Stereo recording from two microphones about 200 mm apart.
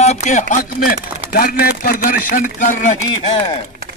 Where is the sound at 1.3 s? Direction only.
45° left (ahead or behind).